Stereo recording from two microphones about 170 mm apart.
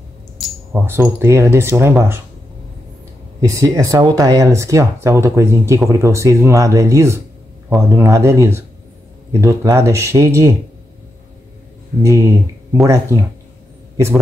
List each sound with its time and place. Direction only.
0.8 s speech: 15° right (ahead or behind)
3.3 s speech: 20° right (ahead or behind)
12.0 s speech: 20° right (ahead or behind)